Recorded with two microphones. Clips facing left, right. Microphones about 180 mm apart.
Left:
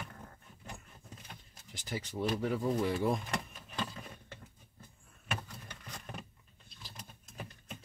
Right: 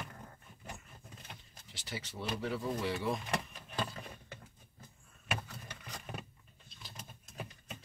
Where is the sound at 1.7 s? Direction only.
50° left (ahead or behind).